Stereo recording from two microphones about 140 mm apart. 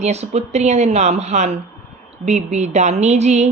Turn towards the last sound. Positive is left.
turn(degrees=-55)  # may be behind; listen again after turning